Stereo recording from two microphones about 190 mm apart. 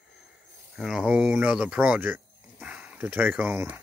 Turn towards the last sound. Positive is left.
turn(degrees=-10)  # may be behind; listen again after turning